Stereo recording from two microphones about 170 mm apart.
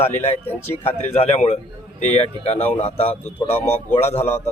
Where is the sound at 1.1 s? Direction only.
40° left (ahead or behind).